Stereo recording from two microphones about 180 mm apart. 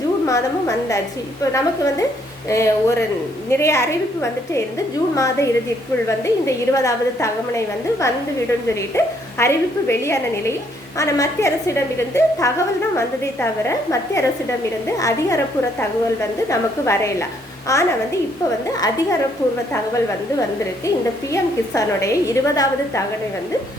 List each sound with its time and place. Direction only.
1.5 s a woman's voice: 20° left (ahead or behind)
16.5 s a woman's voice: 15° left (ahead or behind)
21.7 s a woman's voice: 20° left (ahead or behind)